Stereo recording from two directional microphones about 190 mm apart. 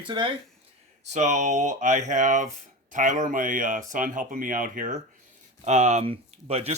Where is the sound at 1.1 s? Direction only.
40° right (ahead or behind).